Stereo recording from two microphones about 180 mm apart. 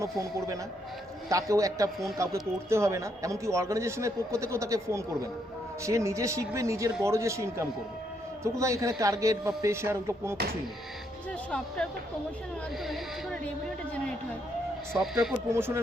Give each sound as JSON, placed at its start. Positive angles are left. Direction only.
{"t": 0.0, "sound": "a man's voice", "side_deg": -15}
{"t": 11.3, "sound": "speech", "side_deg": 5}
{"t": 12.9, "sound": "speech", "side_deg": 5}
{"t": 14.9, "sound": "speech", "side_deg": 0}
{"t": 15.5, "sound": "a man's voice", "side_deg": -15}